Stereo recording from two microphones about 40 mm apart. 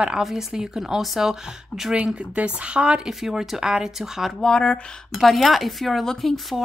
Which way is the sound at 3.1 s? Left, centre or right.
Centre.